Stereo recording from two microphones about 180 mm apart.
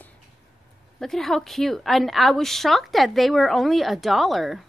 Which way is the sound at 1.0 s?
Centre (ahead or behind).